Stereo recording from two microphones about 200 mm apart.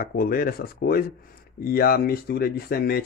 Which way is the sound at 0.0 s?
45° left (ahead or behind).